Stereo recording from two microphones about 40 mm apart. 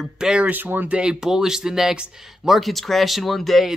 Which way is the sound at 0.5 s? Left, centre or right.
Right.